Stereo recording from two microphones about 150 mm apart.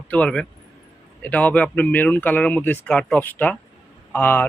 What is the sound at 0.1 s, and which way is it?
Speech, 10° left (ahead or behind).